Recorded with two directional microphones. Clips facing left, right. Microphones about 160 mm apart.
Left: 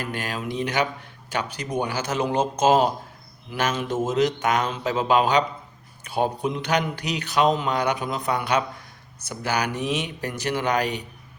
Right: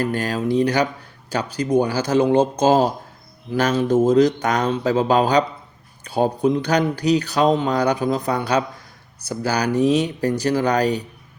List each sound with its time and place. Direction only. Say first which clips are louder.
0.0 s speech: right 8 dB; 40° right (ahead or behind)